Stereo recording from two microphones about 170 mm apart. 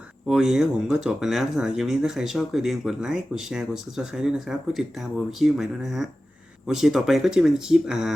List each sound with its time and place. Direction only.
0.3 s speech: centre (ahead or behind)